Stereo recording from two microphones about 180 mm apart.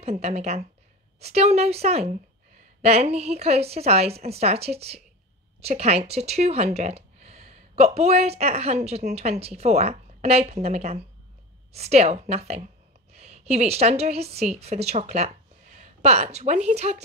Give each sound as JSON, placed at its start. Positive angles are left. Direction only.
{"t": 0.0, "sound": "a woman's voice", "side_deg": -35}